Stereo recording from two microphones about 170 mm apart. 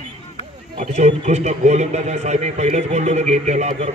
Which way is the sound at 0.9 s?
40° right (ahead or behind).